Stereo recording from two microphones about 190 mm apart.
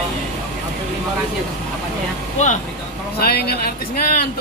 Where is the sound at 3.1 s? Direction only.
55° left (ahead or behind).